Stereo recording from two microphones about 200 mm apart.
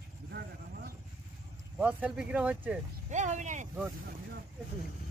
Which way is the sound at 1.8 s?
5° right (ahead or behind).